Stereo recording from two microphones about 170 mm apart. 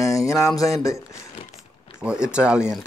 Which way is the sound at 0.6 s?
20° left (ahead or behind).